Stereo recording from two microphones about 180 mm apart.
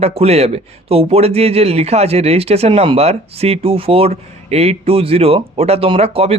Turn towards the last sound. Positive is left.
turn(degrees=-35)  # may be behind; listen again after turning